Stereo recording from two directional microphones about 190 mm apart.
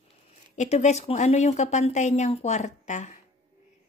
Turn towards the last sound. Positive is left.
turn(degrees=40)  # may be behind; listen again after turning